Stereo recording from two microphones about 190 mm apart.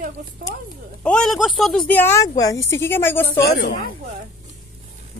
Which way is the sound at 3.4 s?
60° left (ahead or behind).